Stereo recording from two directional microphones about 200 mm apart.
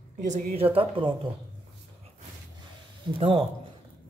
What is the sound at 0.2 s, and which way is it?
Speech, 35° right (ahead or behind).